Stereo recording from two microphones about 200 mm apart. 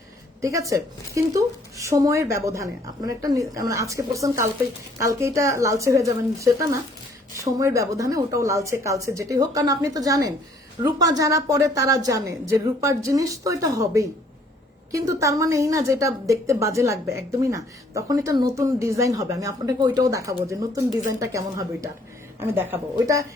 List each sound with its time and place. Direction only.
0.4 s a woman's voice: 15° right (ahead or behind)